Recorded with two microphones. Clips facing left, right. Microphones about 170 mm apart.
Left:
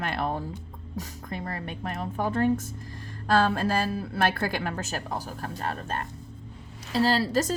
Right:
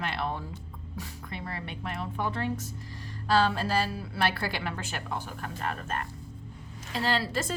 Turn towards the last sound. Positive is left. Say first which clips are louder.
# left 5 dB
turn(degrees=40)  # may be behind; listen again after turning